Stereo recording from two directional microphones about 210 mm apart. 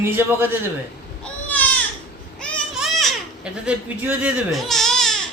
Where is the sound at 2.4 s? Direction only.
Centre (ahead or behind).